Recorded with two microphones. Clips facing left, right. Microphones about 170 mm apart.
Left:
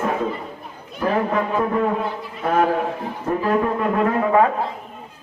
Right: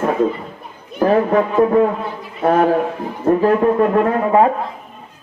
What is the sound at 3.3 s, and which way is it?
Speech, 45° right (ahead or behind).